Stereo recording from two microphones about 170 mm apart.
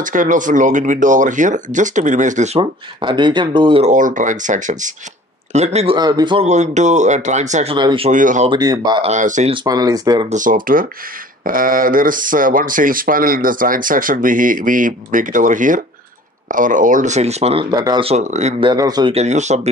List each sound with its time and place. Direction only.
0.0 s speech: 50° right (ahead or behind); by 3.9 s 30° right (ahead or behind)
3.9 s speech: 50° right (ahead or behind)
5.9 s speech: 25° right (ahead or behind)
6.4 s speech: 45° right (ahead or behind)
7.7 s speech: 30° right (ahead or behind)
8.1 s speech: 50° right (ahead or behind)
8.5 s speech: 25° right (ahead or behind)
9.0 s speech: 45° right (ahead or behind)
9.5 s speech: 20° right (ahead or behind)
10.3 s speech: 50° right (ahead or behind)
17.7 s speech: 20° right (ahead or behind)
18.0 s speech: 40° right (ahead or behind)
18.6 s speech: 25° right (ahead or behind)
19.1 s speech: 40° right (ahead or behind)